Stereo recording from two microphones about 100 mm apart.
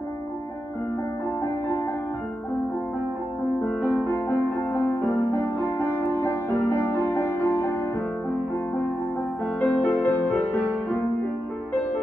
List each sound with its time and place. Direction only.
5.4 s music: 20° left (ahead or behind)
9.6 s music: 15° left (ahead or behind)